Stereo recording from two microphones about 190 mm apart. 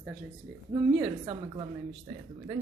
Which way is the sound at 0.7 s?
25° right (ahead or behind).